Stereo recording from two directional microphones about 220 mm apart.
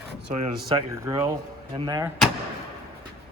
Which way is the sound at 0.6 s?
15° right (ahead or behind).